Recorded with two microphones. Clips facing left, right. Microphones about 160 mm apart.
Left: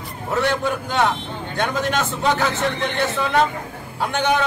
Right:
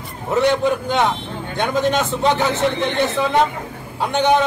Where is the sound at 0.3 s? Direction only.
20° right (ahead or behind).